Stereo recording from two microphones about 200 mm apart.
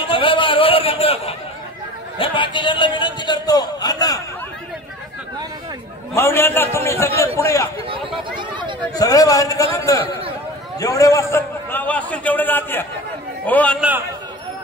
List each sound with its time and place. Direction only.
0.0 s a sound: 25° left (ahead or behind)
2.1 s a man's voice: 25° left (ahead or behind)
6.1 s a man's voice: 10° left (ahead or behind)
8.4 s a sound: 25° right (ahead or behind)
8.9 s a man's voice: 15° left (ahead or behind)
13.7 s a man's voice: 10° right (ahead or behind)